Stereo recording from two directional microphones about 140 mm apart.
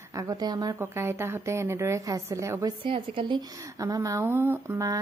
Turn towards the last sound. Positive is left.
turn(degrees=-20)  # may be behind; listen again after turning